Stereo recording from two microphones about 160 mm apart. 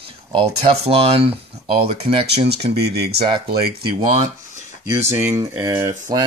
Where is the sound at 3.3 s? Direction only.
35° right (ahead or behind).